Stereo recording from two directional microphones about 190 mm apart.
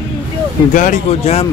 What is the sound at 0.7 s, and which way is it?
Speech, 40° left (ahead or behind).